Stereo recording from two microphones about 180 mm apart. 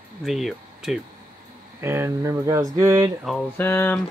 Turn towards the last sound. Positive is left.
turn(degrees=15)  # may be behind; listen again after turning